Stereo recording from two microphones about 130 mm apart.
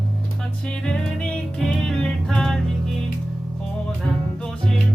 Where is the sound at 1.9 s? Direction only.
5° left (ahead or behind).